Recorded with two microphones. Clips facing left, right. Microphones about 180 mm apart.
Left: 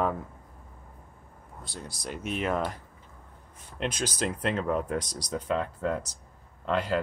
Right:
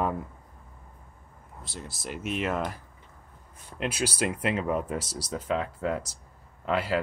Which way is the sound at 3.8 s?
10° right (ahead or behind).